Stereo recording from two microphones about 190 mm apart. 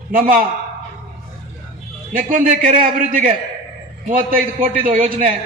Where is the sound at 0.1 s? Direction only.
45° right (ahead or behind).